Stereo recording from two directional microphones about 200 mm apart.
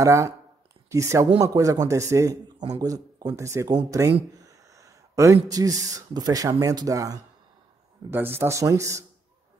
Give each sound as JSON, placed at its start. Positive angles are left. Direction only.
{"t": 0.0, "sound": "a man's voice", "side_deg": -15}